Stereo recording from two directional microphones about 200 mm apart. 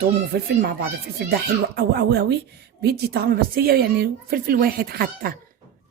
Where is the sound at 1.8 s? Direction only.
55° right (ahead or behind).